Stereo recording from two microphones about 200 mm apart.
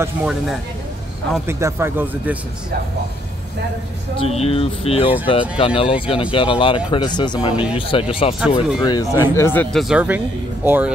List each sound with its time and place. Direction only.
0.0 s speech: 5° right (ahead or behind)
4.2 s speech: 30° left (ahead or behind)
8.4 s speech: 5° right (ahead or behind)
8.8 s speech: 20° left (ahead or behind); by 10.9 s 10° right (ahead or behind)